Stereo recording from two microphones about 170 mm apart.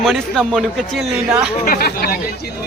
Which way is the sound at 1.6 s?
60° left (ahead or behind).